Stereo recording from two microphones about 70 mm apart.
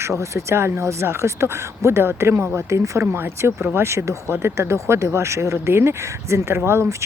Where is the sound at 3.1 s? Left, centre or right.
Right.